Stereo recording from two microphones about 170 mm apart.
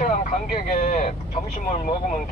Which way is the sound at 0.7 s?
55° left (ahead or behind).